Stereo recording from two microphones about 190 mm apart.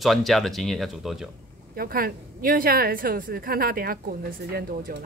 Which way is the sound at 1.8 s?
50° right (ahead or behind).